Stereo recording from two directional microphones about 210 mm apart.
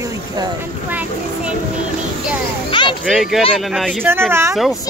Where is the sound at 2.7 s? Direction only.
25° left (ahead or behind).